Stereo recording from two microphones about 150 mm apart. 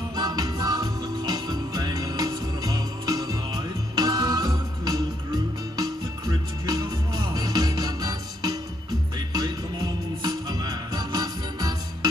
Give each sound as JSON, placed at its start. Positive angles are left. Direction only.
{"t": 0.1, "sound": "music", "side_deg": -25}